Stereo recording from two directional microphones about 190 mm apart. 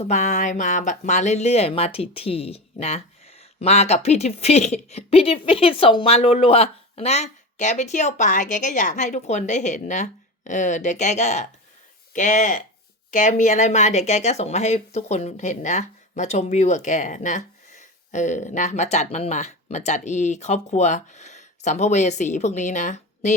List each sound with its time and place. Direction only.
0.0 s speech: 40° left (ahead or behind)